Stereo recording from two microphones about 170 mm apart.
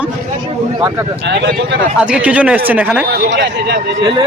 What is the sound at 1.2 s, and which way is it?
Speech, 85° right.